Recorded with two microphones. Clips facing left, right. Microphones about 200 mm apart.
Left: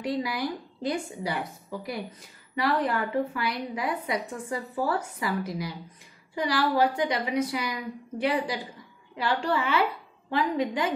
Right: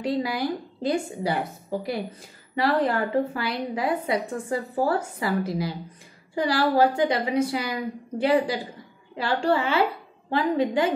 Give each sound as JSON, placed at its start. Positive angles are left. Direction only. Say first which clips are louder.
{"t": 0.0, "sound": "a woman's voice", "louder": "right 3 dB", "side_deg": -25}